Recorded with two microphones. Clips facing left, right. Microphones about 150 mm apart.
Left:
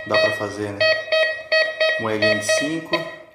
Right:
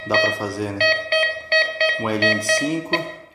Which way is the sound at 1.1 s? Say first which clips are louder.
Left 2 dB; 30° left (ahead or behind).